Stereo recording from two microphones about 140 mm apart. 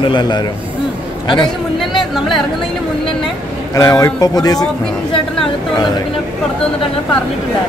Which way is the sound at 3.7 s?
25° left (ahead or behind).